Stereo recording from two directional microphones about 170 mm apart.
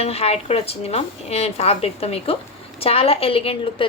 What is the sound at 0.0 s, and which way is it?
A woman's voice, 35° left (ahead or behind).